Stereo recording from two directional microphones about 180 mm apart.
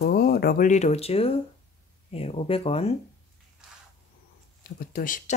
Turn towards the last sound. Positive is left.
turn(degrees=45)  # may be behind; listen again after turning